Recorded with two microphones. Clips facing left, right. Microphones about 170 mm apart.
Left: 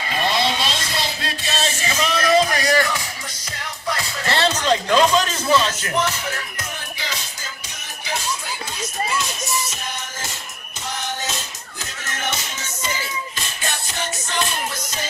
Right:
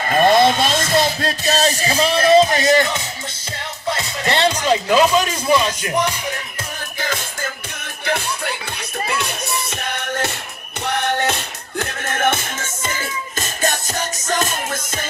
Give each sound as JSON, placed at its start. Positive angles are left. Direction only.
{"t": 0.0, "sound": "music", "side_deg": -50}
{"t": 7.0, "sound": "music", "side_deg": -50}